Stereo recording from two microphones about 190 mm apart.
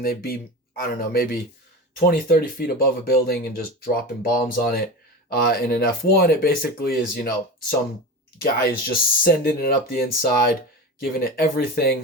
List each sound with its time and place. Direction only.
0.0 s speech: 50° left (ahead or behind)
8.4 s speech: 50° left (ahead or behind)